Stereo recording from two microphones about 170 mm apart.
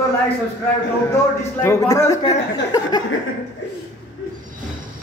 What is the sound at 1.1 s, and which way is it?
Speech, 15° left (ahead or behind).